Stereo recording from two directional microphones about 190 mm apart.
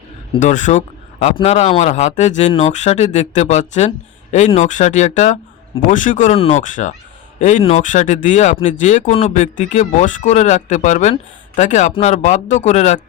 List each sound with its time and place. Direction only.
0.3 s speech: 40° left (ahead or behind)